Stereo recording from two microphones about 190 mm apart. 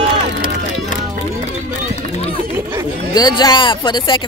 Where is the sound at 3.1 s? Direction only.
20° left (ahead or behind).